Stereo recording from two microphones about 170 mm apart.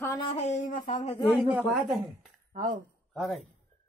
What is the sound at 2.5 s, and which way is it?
Speech, 50° right (ahead or behind).